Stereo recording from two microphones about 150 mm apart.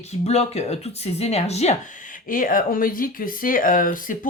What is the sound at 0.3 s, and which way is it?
Speech, 45° left (ahead or behind).